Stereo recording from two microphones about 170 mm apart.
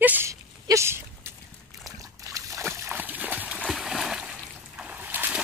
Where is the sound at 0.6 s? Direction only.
15° right (ahead or behind).